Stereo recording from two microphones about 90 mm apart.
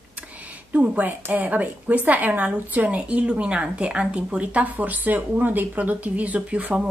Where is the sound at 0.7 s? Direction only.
15° right (ahead or behind).